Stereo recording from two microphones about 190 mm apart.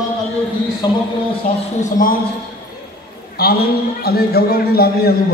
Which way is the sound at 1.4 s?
45° left (ahead or behind).